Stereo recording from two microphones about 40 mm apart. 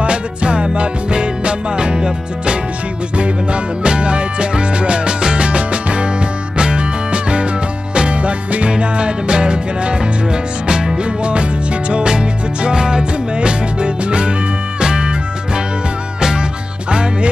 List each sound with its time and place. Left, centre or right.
0.0 s music: right
11.9 s music: right